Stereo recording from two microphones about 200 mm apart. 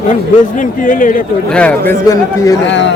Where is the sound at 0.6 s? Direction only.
40° left (ahead or behind).